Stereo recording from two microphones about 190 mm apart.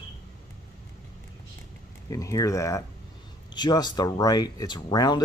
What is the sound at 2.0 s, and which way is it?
Speech, 15° left (ahead or behind).